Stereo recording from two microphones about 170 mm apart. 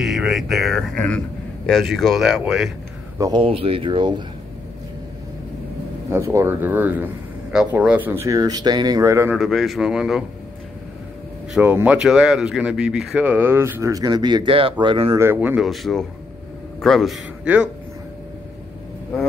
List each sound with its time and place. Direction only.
0.0 s speech: centre (ahead or behind)
3.2 s speech: 25° right (ahead or behind)
6.1 s speech: 15° right (ahead or behind)
9.3 s speech: centre (ahead or behind)
11.5 s speech: 10° right (ahead or behind); by 15.1 s 30° right (ahead or behind)
15.1 s speech: 15° right (ahead or behind)
15.6 s speech: centre (ahead or behind)